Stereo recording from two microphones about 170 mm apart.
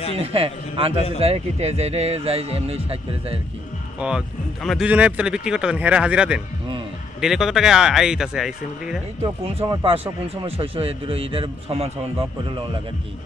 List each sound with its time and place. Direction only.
0.2 s a man's voice: 35° right (ahead or behind)
4.0 s speech: 10° right (ahead or behind)
9.4 s a man's voice: 35° right (ahead or behind)